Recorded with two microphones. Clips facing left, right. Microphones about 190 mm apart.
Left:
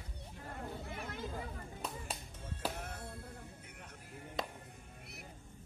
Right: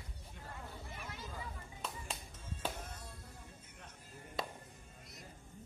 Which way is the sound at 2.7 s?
60° left (ahead or behind).